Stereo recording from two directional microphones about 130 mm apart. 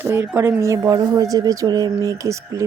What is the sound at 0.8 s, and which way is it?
A man's voice, 30° right (ahead or behind).